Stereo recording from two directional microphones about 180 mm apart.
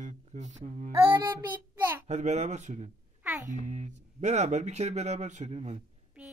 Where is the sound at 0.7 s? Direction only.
40° right (ahead or behind).